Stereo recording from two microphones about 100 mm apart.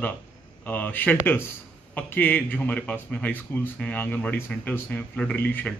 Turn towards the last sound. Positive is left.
turn(degrees=15)  # may be behind; listen again after turning